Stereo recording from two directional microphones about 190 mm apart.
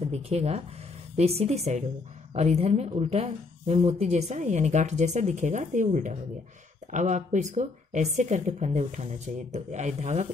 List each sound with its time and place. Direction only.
0.1 s speech: 35° right (ahead or behind)